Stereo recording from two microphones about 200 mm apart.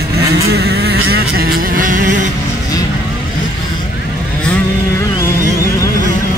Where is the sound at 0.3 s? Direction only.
55° right (ahead or behind).